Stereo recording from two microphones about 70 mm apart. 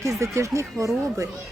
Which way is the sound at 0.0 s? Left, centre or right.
Right.